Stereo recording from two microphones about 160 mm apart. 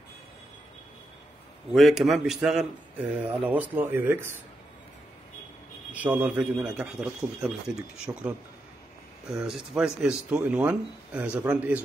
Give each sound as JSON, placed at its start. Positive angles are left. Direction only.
{"t": 1.7, "sound": "a man's voice", "side_deg": 0}
{"t": 5.9, "sound": "speech", "side_deg": -10}